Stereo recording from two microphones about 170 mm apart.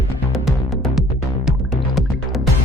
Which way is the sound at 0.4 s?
Centre (ahead or behind).